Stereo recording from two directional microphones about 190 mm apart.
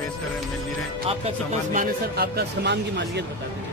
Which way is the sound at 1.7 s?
50° right (ahead or behind).